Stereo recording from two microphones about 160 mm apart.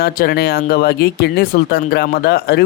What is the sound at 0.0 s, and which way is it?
Speech, 75° left (ahead or behind).